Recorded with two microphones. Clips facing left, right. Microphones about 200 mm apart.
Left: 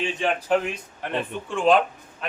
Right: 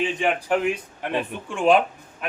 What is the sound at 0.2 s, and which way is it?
Speech, 15° right (ahead or behind).